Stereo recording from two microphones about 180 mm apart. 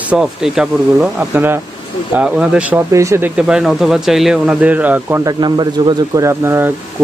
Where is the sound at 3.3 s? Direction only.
5° right (ahead or behind).